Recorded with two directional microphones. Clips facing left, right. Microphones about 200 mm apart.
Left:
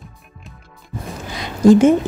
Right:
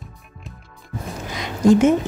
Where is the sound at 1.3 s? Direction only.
30° left (ahead or behind).